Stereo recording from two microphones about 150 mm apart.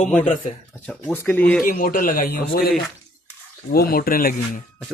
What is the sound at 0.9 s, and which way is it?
Speech, 10° left (ahead or behind).